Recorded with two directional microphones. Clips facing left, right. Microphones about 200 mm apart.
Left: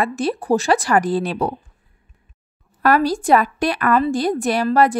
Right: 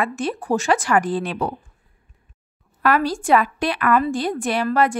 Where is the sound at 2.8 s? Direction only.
40° left (ahead or behind).